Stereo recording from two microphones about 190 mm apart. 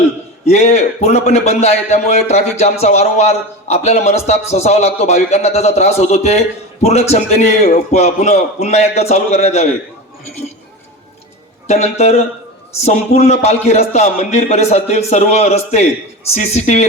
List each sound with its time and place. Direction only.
0.4 s a man's voice: 35° left (ahead or behind)
11.7 s a man's voice: 35° left (ahead or behind)